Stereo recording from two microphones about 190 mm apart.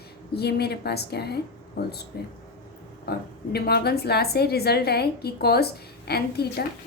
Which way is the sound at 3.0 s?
55° left (ahead or behind).